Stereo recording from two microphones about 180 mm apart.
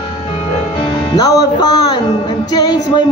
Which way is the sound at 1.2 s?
20° left (ahead or behind).